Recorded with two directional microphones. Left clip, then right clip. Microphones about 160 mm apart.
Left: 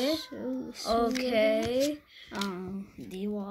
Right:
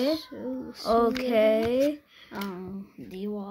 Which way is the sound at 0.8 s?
55° right (ahead or behind).